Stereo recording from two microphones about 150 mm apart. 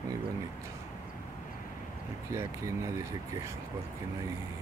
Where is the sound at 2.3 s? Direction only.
20° right (ahead or behind).